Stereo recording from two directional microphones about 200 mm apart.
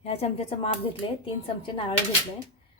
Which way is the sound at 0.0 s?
30° left (ahead or behind).